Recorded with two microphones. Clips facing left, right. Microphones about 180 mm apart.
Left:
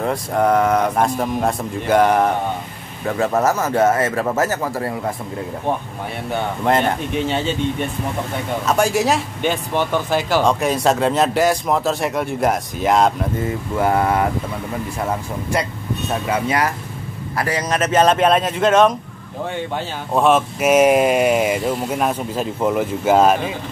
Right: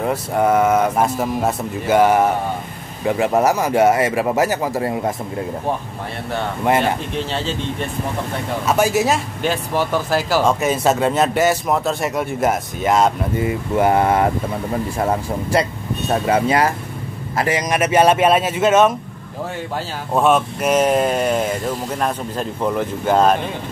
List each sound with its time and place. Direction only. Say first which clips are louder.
0.0 s speech: even; 5° right (ahead or behind)
3.1 s speech: right 2 dB; 15° right (ahead or behind)
6.6 s speech: right 1 dB; 10° right (ahead or behind)
7.2 s speech: left 3 dB; centre (ahead or behind)
8.6 s speech: right 1 dB; 5° right (ahead or behind); by 14.2 s 20° right (ahead or behind)
15.0 s speech: right 3 dB; 35° right (ahead or behind)
17.4 s speech: right 2 dB; 15° right (ahead or behind)
20.2 s speech: even; centre (ahead or behind)